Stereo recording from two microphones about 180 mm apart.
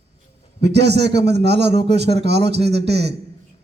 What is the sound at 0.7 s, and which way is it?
A man's voice, 65° right (ahead or behind).